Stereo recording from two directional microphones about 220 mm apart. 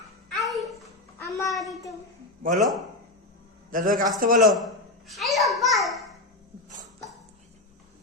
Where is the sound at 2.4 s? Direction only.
40° right (ahead or behind).